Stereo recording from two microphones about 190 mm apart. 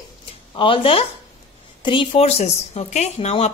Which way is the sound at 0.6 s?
25° left (ahead or behind).